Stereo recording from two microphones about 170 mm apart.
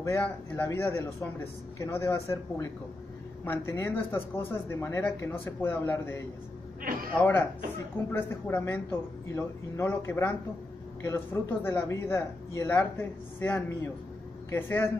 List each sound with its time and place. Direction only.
0.0 s speech: 15° left (ahead or behind)
6.8 s a sound: 60° right (ahead or behind)
7.2 s speech: 10° left (ahead or behind)